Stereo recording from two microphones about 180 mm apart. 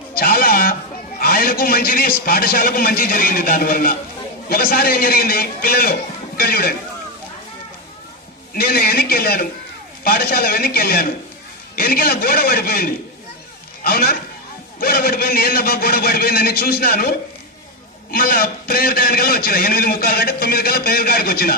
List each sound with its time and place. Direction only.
0.1 s music: 55° left (ahead or behind)
1.2 s a man's voice: 55° left (ahead or behind)
8.5 s a man's voice: 60° left (ahead or behind)